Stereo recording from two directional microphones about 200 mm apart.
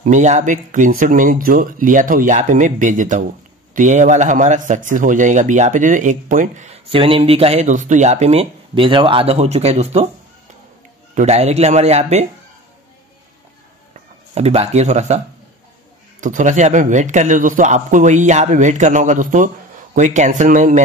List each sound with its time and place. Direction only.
0.0 s speech: 35° right (ahead or behind)
11.1 s speech: 35° right (ahead or behind)
14.3 s speech: 30° right (ahead or behind)